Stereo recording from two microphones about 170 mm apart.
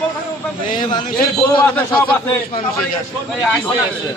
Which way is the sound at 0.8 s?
25° left (ahead or behind).